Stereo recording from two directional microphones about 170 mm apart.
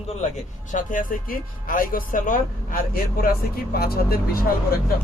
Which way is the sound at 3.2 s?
60° left (ahead or behind).